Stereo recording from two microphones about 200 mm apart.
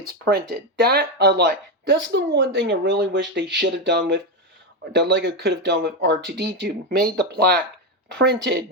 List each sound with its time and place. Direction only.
0.3 s a woman's voice: 50° right (ahead or behind)